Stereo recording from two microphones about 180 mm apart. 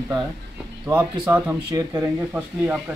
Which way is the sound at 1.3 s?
10° right (ahead or behind).